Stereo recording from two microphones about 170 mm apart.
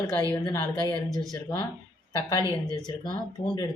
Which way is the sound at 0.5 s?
15° left (ahead or behind).